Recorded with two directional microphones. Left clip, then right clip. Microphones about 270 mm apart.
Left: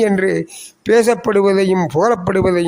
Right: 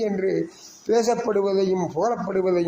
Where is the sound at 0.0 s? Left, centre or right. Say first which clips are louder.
Left 8 dB; left.